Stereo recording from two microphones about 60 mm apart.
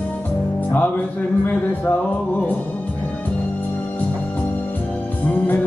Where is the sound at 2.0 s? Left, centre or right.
Left.